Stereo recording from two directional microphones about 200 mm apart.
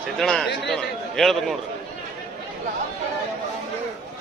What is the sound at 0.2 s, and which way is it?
Speech, centre (ahead or behind).